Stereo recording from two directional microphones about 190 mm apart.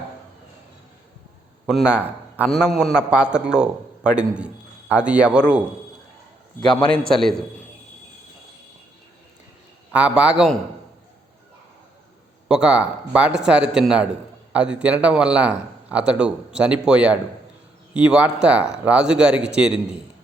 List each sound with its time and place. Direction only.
1.6 s a man's voice: 5° right (ahead or behind)
7.1 s a man's voice: centre (ahead or behind)
9.9 s a man's voice: 5° right (ahead or behind)
12.5 s a man's voice: 5° right (ahead or behind)